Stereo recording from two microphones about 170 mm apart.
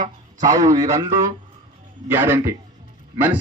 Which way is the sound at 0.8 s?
15° right (ahead or behind).